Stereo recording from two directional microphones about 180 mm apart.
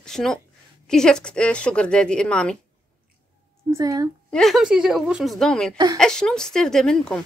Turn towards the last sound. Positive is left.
turn(degrees=5)  # may be behind; listen again after turning